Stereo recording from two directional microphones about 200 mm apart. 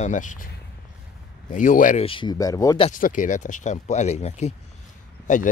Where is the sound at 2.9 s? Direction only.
40° left (ahead or behind).